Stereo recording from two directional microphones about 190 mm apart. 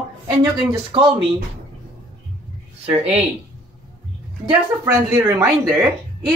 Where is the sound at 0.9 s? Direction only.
30° right (ahead or behind).